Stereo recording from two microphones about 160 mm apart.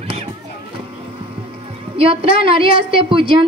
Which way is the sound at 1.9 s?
35° right (ahead or behind).